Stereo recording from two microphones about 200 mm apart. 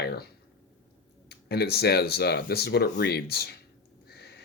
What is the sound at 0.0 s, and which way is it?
Speech, 50° left (ahead or behind).